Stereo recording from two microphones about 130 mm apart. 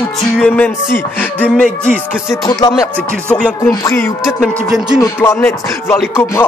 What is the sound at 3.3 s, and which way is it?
Speech, 10° left (ahead or behind).